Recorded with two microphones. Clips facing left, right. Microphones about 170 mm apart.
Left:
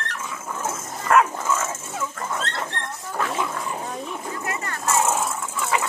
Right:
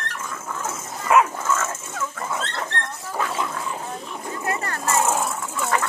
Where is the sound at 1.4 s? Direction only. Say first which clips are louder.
Even; 10° left (ahead or behind).